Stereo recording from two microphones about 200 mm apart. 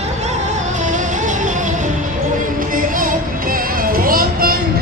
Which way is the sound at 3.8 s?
45° right (ahead or behind).